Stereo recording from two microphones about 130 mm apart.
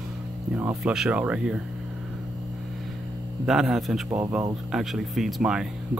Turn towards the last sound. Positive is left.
turn(degrees=-5)  # may be behind; listen again after turning